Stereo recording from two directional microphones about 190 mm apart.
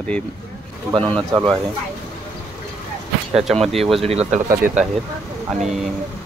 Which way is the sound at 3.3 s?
Centre (ahead or behind).